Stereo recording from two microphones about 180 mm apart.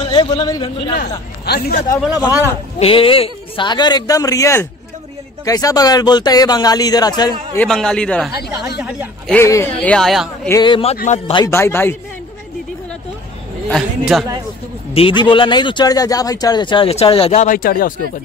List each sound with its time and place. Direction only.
0.0 s a man's voice: 30° left (ahead or behind)
1.4 s a man's voice: 65° left (ahead or behind)
2.8 s speech: 30° left (ahead or behind)
7.5 s a man's voice: 5° left (ahead or behind)
8.4 s speech: 65° left (ahead or behind)
9.3 s a man's voice: 15° left (ahead or behind)
9.8 s a man's voice: 5° left (ahead or behind)
10.5 s speech: 25° left (ahead or behind)
11.4 s a man's voice: 15° left (ahead or behind)
13.7 s a man's voice: centre (ahead or behind)
15.0 s speech: 30° left (ahead or behind); by 17.9 s 50° left (ahead or behind)